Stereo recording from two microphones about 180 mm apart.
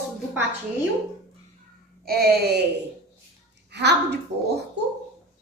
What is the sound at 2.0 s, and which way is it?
Speech, 60° right (ahead or behind).